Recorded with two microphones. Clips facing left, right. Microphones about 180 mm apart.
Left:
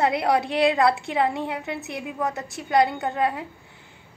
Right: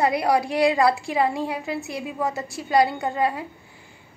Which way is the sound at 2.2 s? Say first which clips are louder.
Right 1 dB; centre (ahead or behind).